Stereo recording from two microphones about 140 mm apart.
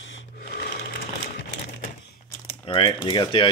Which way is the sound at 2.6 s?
40° left (ahead or behind).